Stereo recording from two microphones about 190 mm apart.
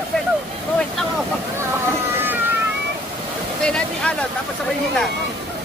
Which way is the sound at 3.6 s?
5° left (ahead or behind).